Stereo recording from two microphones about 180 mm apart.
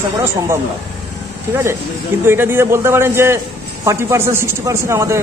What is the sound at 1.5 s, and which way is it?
A man's voice, 15° right (ahead or behind).